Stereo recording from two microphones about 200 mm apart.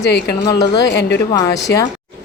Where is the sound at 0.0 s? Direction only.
55° left (ahead or behind).